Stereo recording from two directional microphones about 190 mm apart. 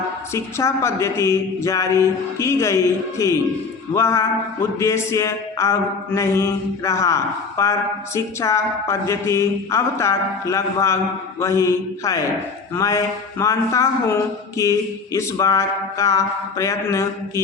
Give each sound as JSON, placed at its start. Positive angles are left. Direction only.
{"t": 0.3, "sound": "mantra", "side_deg": 15}